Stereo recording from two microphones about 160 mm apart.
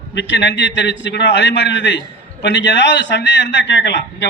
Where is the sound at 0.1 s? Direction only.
90° left.